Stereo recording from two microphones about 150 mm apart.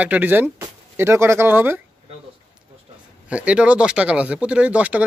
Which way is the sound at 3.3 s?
10° right (ahead or behind).